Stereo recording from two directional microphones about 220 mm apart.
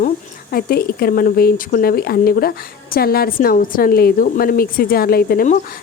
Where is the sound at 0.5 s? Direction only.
45° left (ahead or behind).